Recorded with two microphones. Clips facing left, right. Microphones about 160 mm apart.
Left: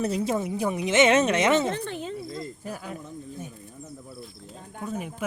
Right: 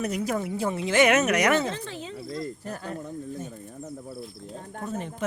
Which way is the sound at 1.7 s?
55° left (ahead or behind).